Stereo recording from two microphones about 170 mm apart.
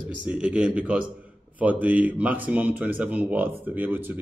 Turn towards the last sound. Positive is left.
turn(degrees=-10)  # may be behind; listen again after turning